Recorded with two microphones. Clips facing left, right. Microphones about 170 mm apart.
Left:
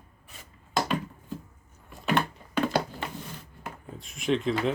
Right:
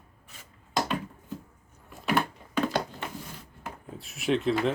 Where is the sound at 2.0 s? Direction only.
Centre (ahead or behind).